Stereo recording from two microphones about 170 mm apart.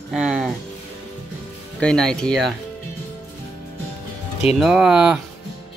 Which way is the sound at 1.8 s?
5° left (ahead or behind).